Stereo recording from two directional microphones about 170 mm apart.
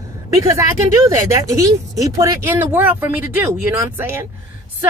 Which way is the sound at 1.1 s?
20° right (ahead or behind).